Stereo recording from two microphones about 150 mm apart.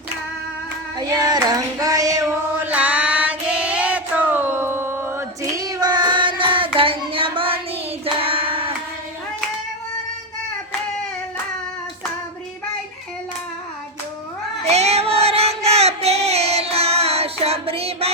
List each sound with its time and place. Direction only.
0.9 s child singing: 25° right (ahead or behind)
14.6 s child singing: 45° right (ahead or behind)